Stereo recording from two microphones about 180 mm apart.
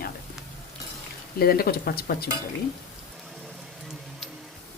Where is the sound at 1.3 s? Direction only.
55° left (ahead or behind).